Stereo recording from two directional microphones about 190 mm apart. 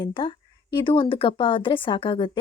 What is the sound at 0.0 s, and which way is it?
Speech, 25° left (ahead or behind).